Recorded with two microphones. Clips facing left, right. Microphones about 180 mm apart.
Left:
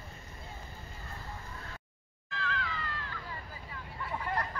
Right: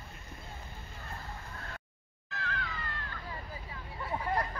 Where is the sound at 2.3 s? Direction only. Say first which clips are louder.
Left 2 dB; 45° right (ahead or behind).